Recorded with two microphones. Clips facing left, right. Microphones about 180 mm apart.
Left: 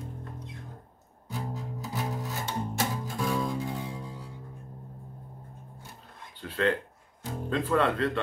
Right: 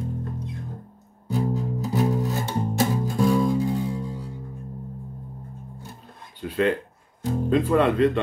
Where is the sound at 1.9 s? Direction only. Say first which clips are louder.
Right 11 dB; 35° right (ahead or behind).